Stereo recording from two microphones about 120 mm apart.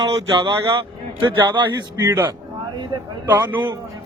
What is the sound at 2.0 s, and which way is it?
Speech, 20° right (ahead or behind).